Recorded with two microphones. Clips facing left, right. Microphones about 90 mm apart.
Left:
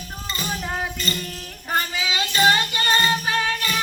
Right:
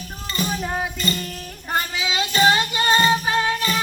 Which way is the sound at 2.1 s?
20° right (ahead or behind).